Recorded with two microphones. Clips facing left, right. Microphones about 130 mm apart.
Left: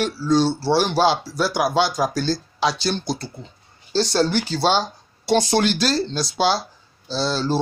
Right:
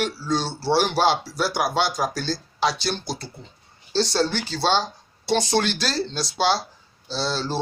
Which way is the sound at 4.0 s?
10° left (ahead or behind).